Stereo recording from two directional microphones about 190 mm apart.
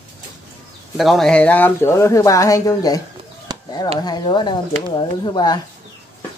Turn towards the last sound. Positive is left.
turn(degrees=20)  # may be behind; listen again after turning